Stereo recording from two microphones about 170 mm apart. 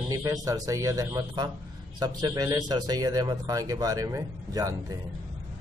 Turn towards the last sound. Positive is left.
turn(degrees=-20)  # may be behind; listen again after turning